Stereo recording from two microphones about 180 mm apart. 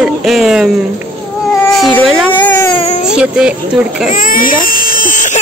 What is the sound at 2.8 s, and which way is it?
Baby cry, 40° left (ahead or behind).